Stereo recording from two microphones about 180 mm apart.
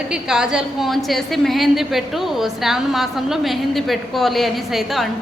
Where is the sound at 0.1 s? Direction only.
5° right (ahead or behind).